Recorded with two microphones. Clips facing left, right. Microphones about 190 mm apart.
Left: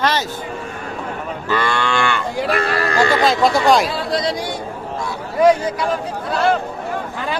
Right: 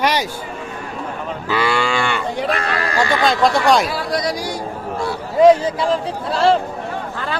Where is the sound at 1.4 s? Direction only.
10° right (ahead or behind).